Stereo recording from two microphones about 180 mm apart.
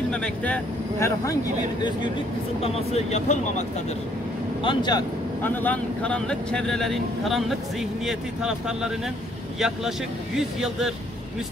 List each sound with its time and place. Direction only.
0.1 s speech: 5° left (ahead or behind); by 3.6 s 40° left (ahead or behind)
4.6 s speech: 25° left (ahead or behind)
5.4 s speech: 10° left (ahead or behind)